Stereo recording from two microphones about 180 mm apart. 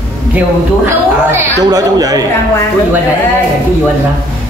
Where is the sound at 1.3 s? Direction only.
20° right (ahead or behind).